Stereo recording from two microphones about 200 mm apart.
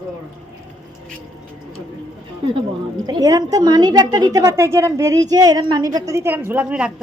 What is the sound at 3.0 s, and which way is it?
A woman's voice, 20° right (ahead or behind).